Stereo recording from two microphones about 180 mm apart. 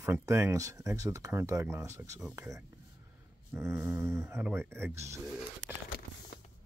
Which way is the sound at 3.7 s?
5° right (ahead or behind).